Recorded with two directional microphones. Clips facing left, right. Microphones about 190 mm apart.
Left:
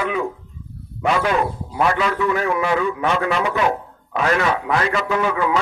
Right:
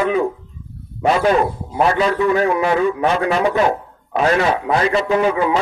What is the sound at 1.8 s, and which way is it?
A man's voice, 30° right (ahead or behind).